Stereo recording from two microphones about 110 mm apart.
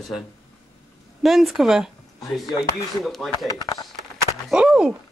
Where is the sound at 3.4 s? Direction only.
35° left (ahead or behind).